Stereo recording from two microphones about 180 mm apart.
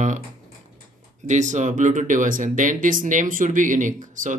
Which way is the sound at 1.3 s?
45° right (ahead or behind).